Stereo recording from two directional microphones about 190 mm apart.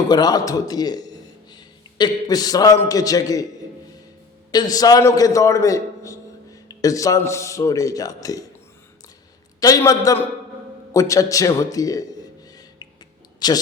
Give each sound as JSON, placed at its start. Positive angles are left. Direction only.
{"t": 0.1, "sound": "a man's voice", "side_deg": 20}
{"t": 4.5, "sound": "a man's voice", "side_deg": 20}
{"t": 9.6, "sound": "a man's voice", "side_deg": 20}
{"t": 13.4, "sound": "speech", "side_deg": 20}